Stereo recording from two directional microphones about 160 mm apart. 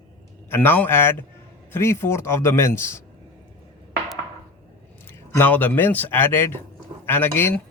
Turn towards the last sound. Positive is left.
turn(degrees=15)  # may be behind; listen again after turning